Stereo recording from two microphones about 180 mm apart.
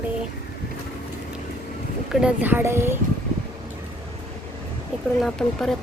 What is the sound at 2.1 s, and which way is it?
Speech, 5° right (ahead or behind).